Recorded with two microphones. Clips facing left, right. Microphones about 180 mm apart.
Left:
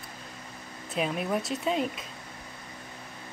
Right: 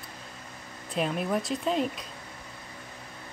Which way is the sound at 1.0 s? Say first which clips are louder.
Right 1 dB; centre (ahead or behind).